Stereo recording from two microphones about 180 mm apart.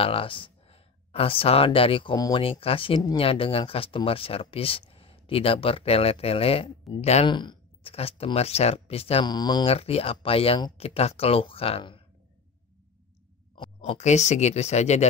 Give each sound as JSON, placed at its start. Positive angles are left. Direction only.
{"t": 0.0, "sound": "speech", "side_deg": 30}
{"t": 13.7, "sound": "speech", "side_deg": 40}